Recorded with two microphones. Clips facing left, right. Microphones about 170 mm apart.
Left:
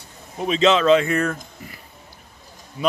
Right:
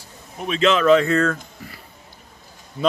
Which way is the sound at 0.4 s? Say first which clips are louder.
Left 1 dB; 25° left (ahead or behind).